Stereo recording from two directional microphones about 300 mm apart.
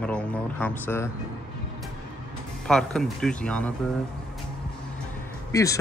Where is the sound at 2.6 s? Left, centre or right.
Centre.